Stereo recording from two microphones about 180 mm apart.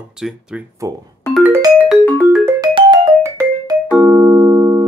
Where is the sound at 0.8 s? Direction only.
20° right (ahead or behind).